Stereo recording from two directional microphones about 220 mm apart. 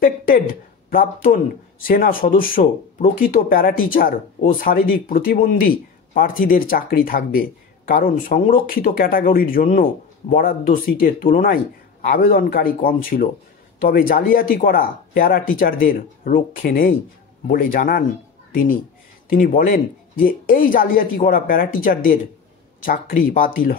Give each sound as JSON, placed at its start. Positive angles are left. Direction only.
{"t": 0.0, "sound": "speech", "side_deg": 40}